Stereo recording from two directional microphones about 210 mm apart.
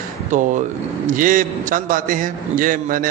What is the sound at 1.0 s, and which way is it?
A man's voice, 40° right (ahead or behind).